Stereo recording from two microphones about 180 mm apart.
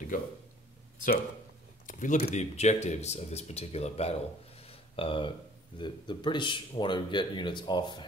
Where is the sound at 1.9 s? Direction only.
45° left (ahead or behind).